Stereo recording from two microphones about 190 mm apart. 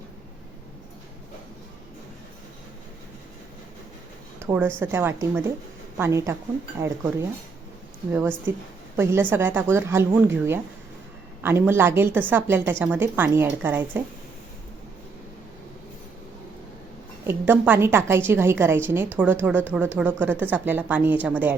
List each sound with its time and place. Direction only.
4.4 s a sound: 10° right (ahead or behind)
4.8 s a woman's voice: 10° right (ahead or behind)
9.0 s a woman's voice: 10° right (ahead or behind)
17.2 s a woman's voice: 10° right (ahead or behind)